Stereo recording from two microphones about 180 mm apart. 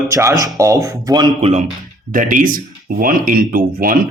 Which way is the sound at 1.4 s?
40° right (ahead or behind).